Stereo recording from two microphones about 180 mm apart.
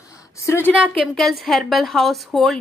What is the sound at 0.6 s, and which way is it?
Speech, 5° right (ahead or behind).